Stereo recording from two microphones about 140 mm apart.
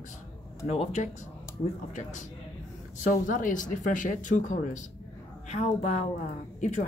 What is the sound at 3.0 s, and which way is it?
Speech, 65° left (ahead or behind).